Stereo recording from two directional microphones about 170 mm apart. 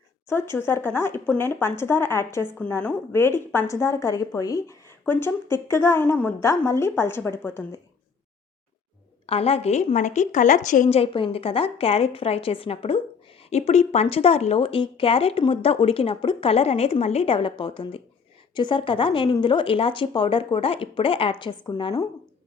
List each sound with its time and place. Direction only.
0.3 s speech: 15° left (ahead or behind)
9.2 s speech: 35° left (ahead or behind)